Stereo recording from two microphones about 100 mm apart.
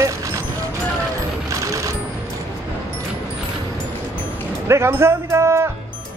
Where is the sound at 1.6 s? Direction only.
30° right (ahead or behind).